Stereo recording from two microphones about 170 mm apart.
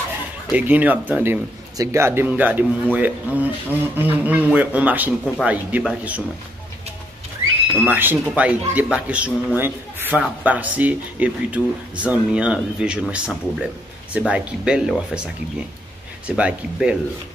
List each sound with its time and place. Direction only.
0.5 s a man's voice: 10° right (ahead or behind)
7.7 s a man's voice: 10° right (ahead or behind)
16.3 s a man's voice: 5° right (ahead or behind)